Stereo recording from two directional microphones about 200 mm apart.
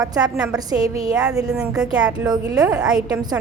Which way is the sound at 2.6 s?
20° right (ahead or behind).